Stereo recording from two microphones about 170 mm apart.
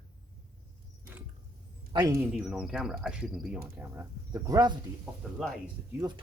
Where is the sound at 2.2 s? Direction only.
5° right (ahead or behind).